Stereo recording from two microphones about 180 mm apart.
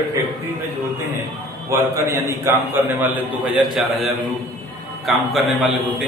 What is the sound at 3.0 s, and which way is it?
Speech, 5° right (ahead or behind).